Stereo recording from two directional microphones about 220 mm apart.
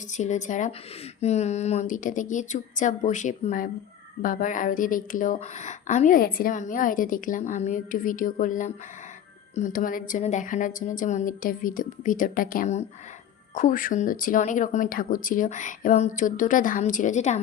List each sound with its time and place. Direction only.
0.1 s a woman's voice: 35° left (ahead or behind)